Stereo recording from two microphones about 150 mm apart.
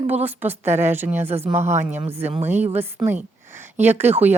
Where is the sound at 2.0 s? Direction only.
45° right (ahead or behind).